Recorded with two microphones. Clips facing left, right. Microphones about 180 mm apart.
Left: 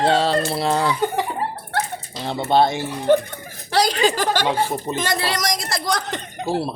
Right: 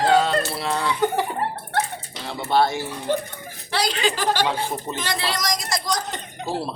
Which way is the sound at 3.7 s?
45° left (ahead or behind).